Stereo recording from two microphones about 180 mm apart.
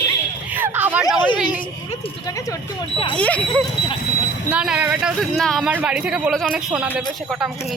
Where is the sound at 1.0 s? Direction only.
25° left (ahead or behind).